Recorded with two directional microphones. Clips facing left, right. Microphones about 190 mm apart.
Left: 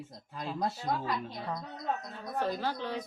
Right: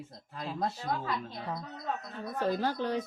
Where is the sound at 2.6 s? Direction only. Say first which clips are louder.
Right 4 dB; 45° right (ahead or behind).